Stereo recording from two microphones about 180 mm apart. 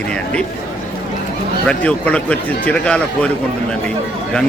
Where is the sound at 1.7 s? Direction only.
5° left (ahead or behind).